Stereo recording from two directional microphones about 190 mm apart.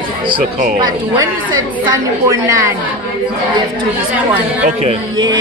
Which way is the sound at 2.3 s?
15° right (ahead or behind).